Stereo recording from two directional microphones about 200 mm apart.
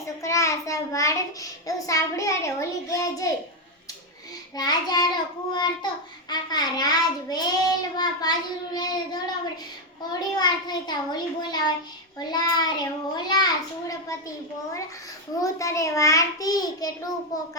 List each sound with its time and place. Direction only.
0.2 s a child's voice: 15° left (ahead or behind)
4.5 s a child's voice: 20° left (ahead or behind)
15.4 s a child's voice: 15° left (ahead or behind)